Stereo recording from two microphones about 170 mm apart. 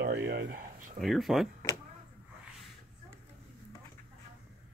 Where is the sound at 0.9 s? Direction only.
Centre (ahead or behind).